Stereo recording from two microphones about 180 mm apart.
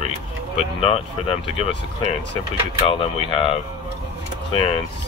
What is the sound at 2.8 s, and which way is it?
Speech, 30° left (ahead or behind).